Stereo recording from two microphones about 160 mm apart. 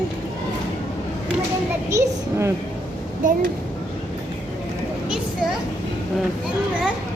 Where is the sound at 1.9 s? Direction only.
15° right (ahead or behind).